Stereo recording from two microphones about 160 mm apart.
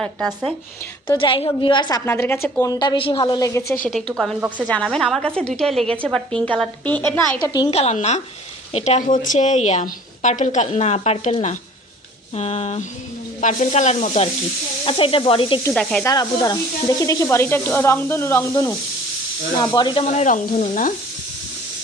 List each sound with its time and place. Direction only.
0.0 s a woman's voice: 5° left (ahead or behind)
1.0 s a woman's voice: 30° left (ahead or behind)
2.0 s speech: 15° left (ahead or behind)
2.7 s a woman's voice: 30° left (ahead or behind)
3.2 s a woman's voice: 20° left (ahead or behind)
3.8 s a woman's voice: 5° left (ahead or behind)
4.4 s speech: 10° right (ahead or behind)
4.7 s a woman's voice: 5° left (ahead or behind)
7.4 s a woman's voice: 25° left (ahead or behind)
7.7 s a woman's voice: 40° left (ahead or behind)
14.8 s speech: 35° left (ahead or behind)
15.7 s a woman's voice: 5° left (ahead or behind)
16.0 s a woman's voice: 20° left (ahead or behind)
19.5 s a woman's voice: 30° left (ahead or behind); by 20.9 s 55° left (ahead or behind)